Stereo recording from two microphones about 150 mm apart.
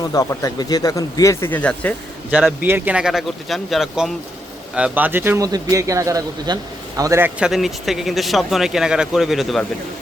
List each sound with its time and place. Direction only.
0.1 s speech: 20° left (ahead or behind)
2.3 s a man's voice: 10° right (ahead or behind)
7.3 s speech: 5° right (ahead or behind)